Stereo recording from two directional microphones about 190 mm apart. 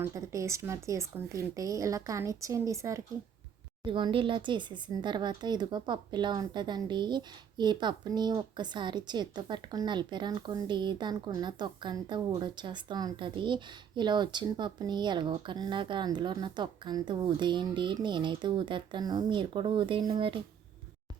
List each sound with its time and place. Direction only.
0.0 s a woman's voice: 15° right (ahead or behind)
3.8 s speech: 25° right (ahead or behind)